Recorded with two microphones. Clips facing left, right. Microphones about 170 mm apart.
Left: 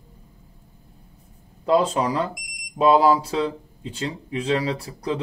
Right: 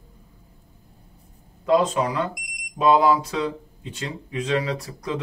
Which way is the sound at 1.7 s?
30° left (ahead or behind).